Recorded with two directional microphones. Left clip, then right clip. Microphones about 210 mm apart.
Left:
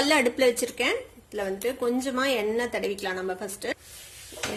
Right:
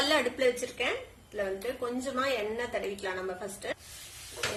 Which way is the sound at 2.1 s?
45° left (ahead or behind).